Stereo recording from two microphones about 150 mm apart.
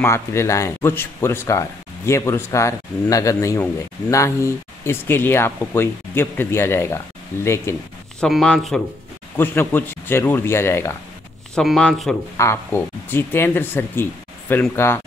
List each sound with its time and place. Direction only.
0.0 s speech: 20° left (ahead or behind)
8.2 s speech: centre (ahead or behind)
9.4 s speech: 15° left (ahead or behind)
11.5 s speech: 5° left (ahead or behind)
12.4 s speech: 15° left (ahead or behind)